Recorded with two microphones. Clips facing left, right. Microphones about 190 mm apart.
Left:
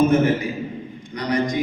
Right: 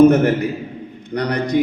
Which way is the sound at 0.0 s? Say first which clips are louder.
Right 5 dB; 65° right (ahead or behind).